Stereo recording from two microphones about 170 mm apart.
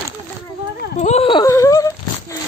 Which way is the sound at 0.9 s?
40° left (ahead or behind).